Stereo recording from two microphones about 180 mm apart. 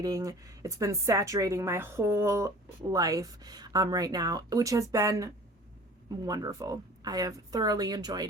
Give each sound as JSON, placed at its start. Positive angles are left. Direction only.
{"t": 0.0, "sound": "a woman's voice", "side_deg": -20}